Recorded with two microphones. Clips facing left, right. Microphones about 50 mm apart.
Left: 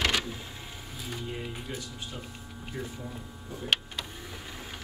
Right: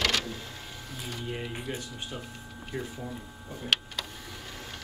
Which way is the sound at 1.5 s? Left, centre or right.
Right.